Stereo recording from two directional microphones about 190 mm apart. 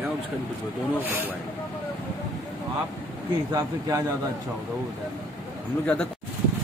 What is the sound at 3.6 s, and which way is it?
Speech, 20° right (ahead or behind).